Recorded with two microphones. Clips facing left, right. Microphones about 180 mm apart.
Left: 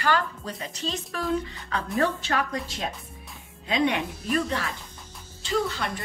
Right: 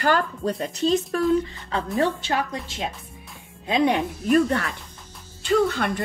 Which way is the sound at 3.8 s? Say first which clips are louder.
Right 6 dB; 35° right (ahead or behind).